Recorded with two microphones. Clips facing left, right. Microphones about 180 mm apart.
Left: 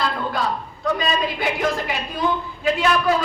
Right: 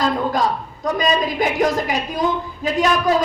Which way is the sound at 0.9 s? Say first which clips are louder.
Right 3 dB; 40° right (ahead or behind).